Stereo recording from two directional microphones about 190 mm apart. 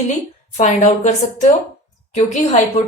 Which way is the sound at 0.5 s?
40° left (ahead or behind).